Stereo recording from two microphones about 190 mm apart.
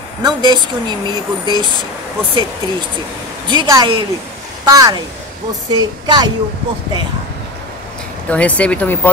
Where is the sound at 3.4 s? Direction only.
25° right (ahead or behind).